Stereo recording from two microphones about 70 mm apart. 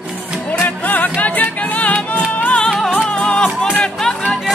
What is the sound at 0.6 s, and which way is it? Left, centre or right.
Music, left.